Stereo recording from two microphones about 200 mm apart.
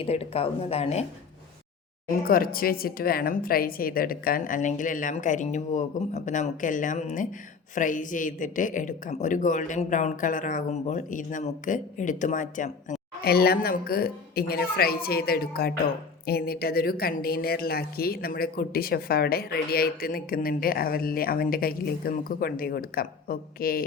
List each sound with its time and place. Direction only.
0.0 s speech: 30° left (ahead or behind)
2.0 s speech: 45° left (ahead or behind)